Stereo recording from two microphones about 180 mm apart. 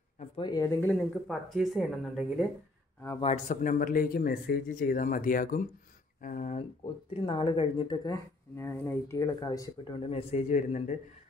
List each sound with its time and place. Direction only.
0.4 s speech: 20° left (ahead or behind)
0.9 s speech: centre (ahead or behind)
3.2 s speech: 40° left (ahead or behind)
7.2 s speech: 30° left (ahead or behind)
10.0 s speech: 35° left (ahead or behind)